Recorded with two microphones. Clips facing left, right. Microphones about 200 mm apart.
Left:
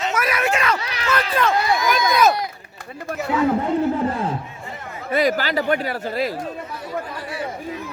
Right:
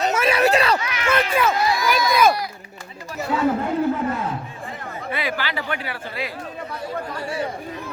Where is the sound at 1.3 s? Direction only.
5° right (ahead or behind).